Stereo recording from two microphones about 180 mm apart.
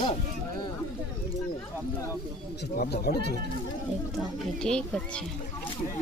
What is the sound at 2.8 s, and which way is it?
Speech, 60° left (ahead or behind).